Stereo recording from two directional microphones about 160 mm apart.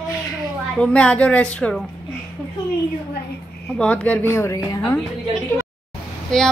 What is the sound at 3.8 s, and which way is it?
A child's voice, 10° left (ahead or behind).